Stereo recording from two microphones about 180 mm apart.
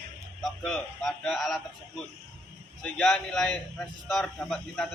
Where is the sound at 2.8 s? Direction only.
Centre (ahead or behind).